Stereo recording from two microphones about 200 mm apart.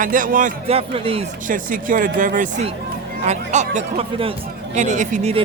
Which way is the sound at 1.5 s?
45° right (ahead or behind).